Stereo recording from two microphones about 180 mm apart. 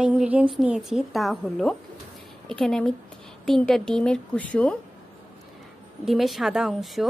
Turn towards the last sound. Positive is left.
turn(degrees=0)  # may be behind; listen again after turning